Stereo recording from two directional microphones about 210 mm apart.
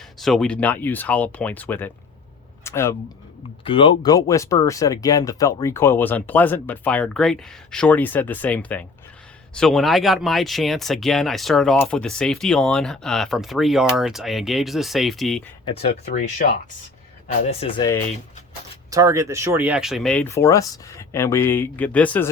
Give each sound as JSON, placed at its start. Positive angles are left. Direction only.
{"t": 0.2, "sound": "speech", "side_deg": 0}
{"t": 3.6, "sound": "speech", "side_deg": 25}
{"t": 15.9, "sound": "speech", "side_deg": 50}
{"t": 17.2, "sound": "speech", "side_deg": 30}
{"t": 18.9, "sound": "speech", "side_deg": -15}